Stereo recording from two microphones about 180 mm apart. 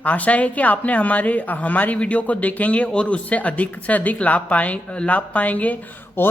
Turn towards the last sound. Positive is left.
turn(degrees=10)  # may be behind; listen again after turning